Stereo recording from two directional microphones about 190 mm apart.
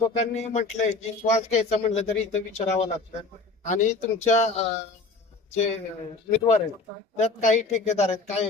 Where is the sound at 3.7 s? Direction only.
40° left (ahead or behind).